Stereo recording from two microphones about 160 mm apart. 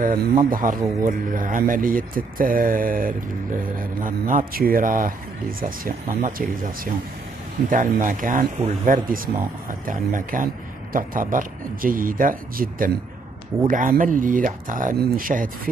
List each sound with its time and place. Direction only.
0.1 s a man's voice: 55° right (ahead or behind)